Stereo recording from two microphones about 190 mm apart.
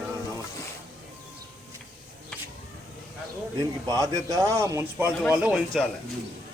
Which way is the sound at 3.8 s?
20° right (ahead or behind).